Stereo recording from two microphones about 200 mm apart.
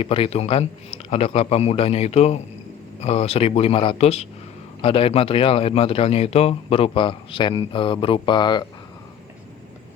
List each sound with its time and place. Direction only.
0.0 s a man's voice: 25° left (ahead or behind)